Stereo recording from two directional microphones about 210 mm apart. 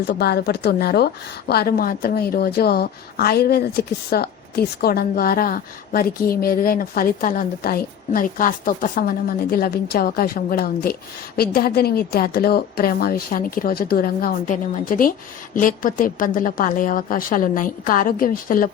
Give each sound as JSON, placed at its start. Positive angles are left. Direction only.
{"t": 0.0, "sound": "a woman's voice", "side_deg": 50}